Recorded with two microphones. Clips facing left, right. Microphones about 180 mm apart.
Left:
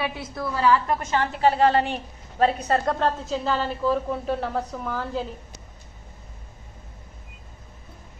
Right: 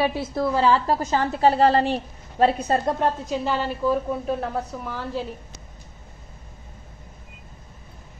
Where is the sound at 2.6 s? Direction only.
20° right (ahead or behind).